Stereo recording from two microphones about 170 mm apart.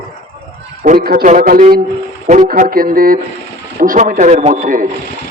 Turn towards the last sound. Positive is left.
turn(degrees=-45)  # may be behind; listen again after turning